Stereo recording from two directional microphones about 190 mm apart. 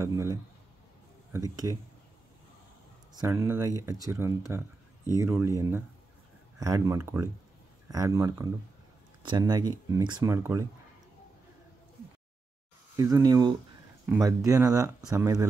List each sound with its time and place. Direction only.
0.0 s speech: 15° right (ahead or behind)
3.2 s speech: 15° right (ahead or behind)
12.9 s speech: 15° right (ahead or behind)